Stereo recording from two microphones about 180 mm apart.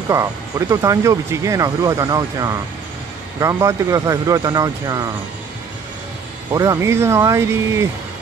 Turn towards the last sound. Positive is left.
turn(degrees=-15)  # may be behind; listen again after turning